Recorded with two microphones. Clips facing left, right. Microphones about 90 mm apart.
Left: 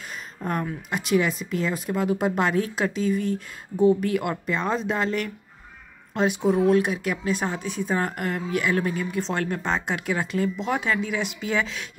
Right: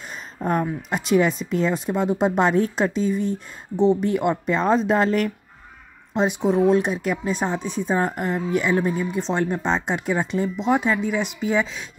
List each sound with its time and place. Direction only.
0.4 s a woman's voice: 30° right (ahead or behind)
6.1 s speech: 20° right (ahead or behind)